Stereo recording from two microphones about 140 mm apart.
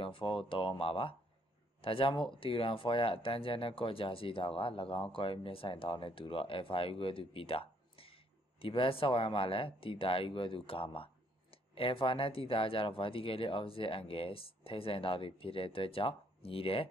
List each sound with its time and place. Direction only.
0.0 s a man's voice: 40° left (ahead or behind)